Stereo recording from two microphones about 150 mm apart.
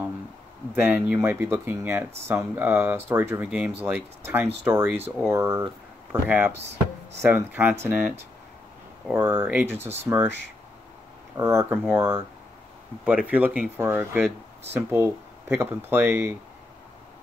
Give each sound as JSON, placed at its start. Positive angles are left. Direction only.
{"t": 0.7, "sound": "speech", "side_deg": -15}
{"t": 9.1, "sound": "speech", "side_deg": -15}
{"t": 11.3, "sound": "speech", "side_deg": -20}